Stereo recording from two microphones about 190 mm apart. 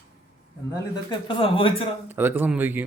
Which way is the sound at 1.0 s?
25° left (ahead or behind).